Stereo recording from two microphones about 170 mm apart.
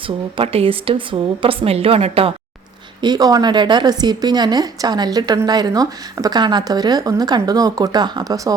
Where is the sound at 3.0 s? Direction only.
25° right (ahead or behind).